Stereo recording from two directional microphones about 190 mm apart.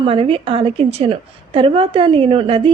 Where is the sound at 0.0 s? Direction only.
30° right (ahead or behind).